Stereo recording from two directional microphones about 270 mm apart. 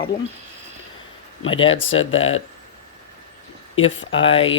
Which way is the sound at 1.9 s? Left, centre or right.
Left.